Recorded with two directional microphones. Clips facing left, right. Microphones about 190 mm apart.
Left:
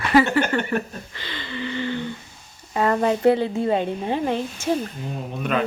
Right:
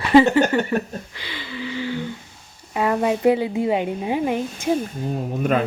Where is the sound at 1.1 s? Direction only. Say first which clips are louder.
Even; 10° right (ahead or behind).